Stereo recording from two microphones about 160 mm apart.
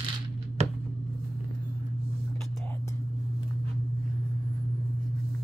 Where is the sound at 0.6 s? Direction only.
45° right (ahead or behind).